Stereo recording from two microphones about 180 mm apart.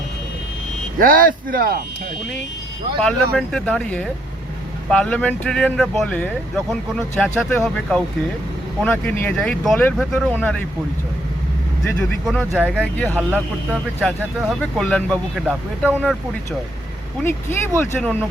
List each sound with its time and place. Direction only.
0.9 s speech: 50° right (ahead or behind)
3.0 s speech: 5° left (ahead or behind)
8.8 s speech: 10° left (ahead or behind)
12.2 s speech: centre (ahead or behind)
12.8 s speech: 10° left (ahead or behind)
15.4 s speech: 5° right (ahead or behind)
17.2 s speech: 15° left (ahead or behind)